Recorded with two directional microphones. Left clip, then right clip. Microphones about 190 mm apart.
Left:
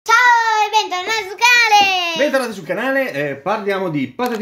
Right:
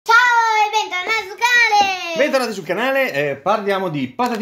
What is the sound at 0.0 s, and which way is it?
Child singing, 35° left (ahead or behind).